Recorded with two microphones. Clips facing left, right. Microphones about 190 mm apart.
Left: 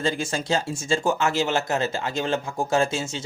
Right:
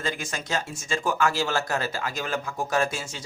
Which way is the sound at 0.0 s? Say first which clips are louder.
Left 6 dB; 30° left (ahead or behind).